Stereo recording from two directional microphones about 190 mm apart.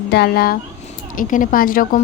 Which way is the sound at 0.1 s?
55° left (ahead or behind).